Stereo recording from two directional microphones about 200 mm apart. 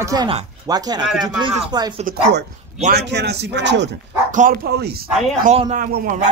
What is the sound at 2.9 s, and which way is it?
A man's voice, 55° right (ahead or behind).